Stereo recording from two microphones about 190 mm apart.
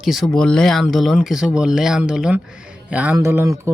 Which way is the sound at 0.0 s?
Centre (ahead or behind).